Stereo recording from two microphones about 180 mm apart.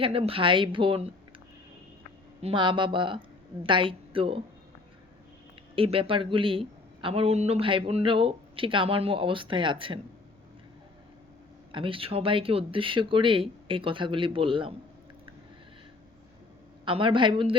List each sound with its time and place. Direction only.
0.0 s a woman's voice: 30° right (ahead or behind)
2.4 s a woman's voice: 30° right (ahead or behind)
5.7 s a woman's voice: 30° right (ahead or behind)
11.7 s a woman's voice: 30° right (ahead or behind)
16.8 s a woman's voice: 30° right (ahead or behind)